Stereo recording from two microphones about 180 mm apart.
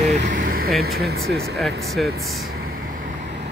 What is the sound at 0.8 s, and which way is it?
Speech, 60° right (ahead or behind).